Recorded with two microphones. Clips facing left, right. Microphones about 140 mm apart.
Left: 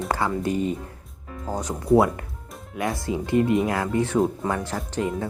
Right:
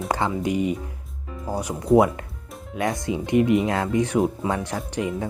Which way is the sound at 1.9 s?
20° right (ahead or behind).